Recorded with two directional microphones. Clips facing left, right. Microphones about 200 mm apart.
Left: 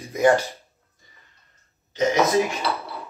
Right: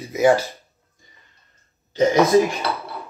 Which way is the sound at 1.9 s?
30° right (ahead or behind).